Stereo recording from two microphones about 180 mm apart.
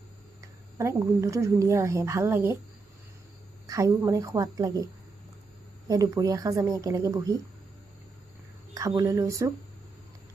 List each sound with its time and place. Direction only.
0.8 s speech: 15° right (ahead or behind)
3.7 s a woman's voice: 20° right (ahead or behind)
5.9 s a woman's voice: 20° right (ahead or behind)
8.7 s speech: 20° right (ahead or behind)